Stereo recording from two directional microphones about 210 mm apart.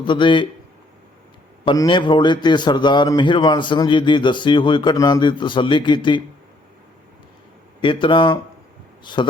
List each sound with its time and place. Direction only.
0.0 s a man's voice: 25° left (ahead or behind)
1.6 s a man's voice: 20° left (ahead or behind)
7.8 s a man's voice: 25° left (ahead or behind)